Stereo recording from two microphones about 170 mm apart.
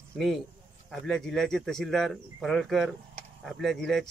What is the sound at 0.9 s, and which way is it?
Speech, 5° left (ahead or behind).